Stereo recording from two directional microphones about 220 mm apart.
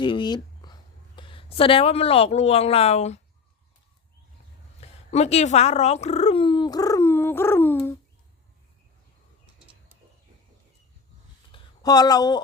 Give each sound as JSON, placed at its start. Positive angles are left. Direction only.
{"t": 0.0, "sound": "speech", "side_deg": 20}
{"t": 4.8, "sound": "speech", "side_deg": 30}
{"t": 11.5, "sound": "a sound", "side_deg": 15}